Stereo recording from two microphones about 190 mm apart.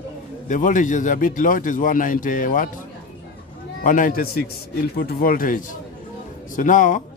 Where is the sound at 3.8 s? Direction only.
45° left (ahead or behind).